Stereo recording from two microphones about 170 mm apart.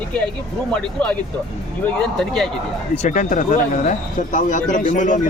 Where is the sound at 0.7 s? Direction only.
5° left (ahead or behind).